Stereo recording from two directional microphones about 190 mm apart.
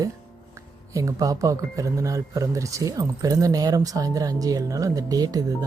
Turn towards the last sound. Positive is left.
turn(degrees=-20)  # may be behind; listen again after turning